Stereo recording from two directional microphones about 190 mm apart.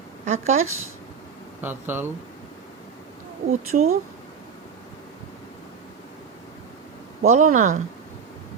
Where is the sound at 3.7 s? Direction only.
45° right (ahead or behind).